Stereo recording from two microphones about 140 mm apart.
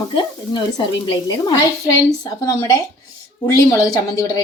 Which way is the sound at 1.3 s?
30° left (ahead or behind).